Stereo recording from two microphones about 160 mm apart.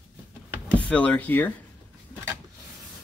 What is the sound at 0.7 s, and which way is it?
Speech, 10° left (ahead or behind).